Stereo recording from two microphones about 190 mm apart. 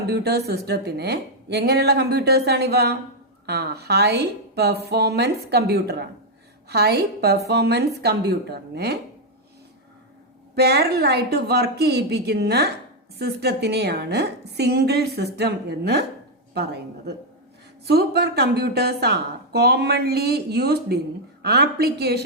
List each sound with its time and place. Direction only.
0.1 s a woman's voice: 60° right (ahead or behind)
10.5 s a woman's voice: 60° right (ahead or behind)